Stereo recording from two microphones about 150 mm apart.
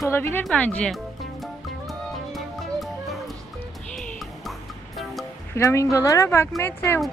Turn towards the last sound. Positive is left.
turn(degrees=15)  # may be behind; listen again after turning